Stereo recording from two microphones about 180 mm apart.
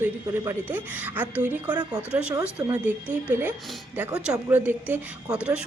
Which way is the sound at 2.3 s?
20° right (ahead or behind).